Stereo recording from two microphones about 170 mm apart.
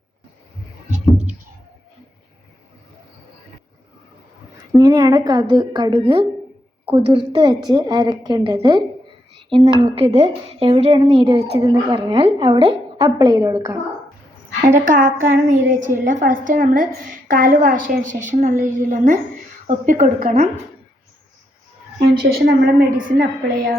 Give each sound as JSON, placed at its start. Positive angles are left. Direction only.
{"t": 0.9, "sound": "a sound", "side_deg": -45}
{"t": 4.7, "sound": "a woman's voice", "side_deg": -25}
{"t": 11.6, "sound": "a woman's voice", "side_deg": -20}
{"t": 14.8, "sound": "a woman's voice", "side_deg": -50}
{"t": 22.0, "sound": "a woman's voice", "side_deg": -65}